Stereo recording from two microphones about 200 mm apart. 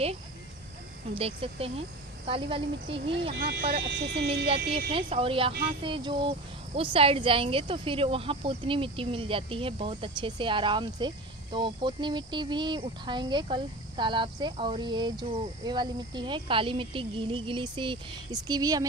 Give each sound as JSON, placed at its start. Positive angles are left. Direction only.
{"t": 1.1, "sound": "speech", "side_deg": -30}
{"t": 3.3, "sound": "speech", "side_deg": -50}
{"t": 4.9, "sound": "speech", "side_deg": -25}